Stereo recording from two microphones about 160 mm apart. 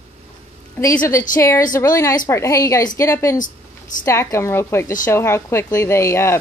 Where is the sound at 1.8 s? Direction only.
20° left (ahead or behind).